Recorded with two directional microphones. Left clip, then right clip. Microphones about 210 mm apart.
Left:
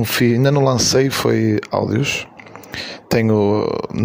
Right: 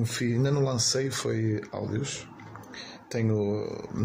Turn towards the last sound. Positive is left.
turn(degrees=45)  # may be behind; listen again after turning